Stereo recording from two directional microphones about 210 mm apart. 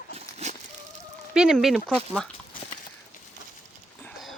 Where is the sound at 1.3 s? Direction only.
5° right (ahead or behind).